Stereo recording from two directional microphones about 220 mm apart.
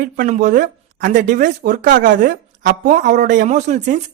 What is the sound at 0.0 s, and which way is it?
Speech, 35° right (ahead or behind).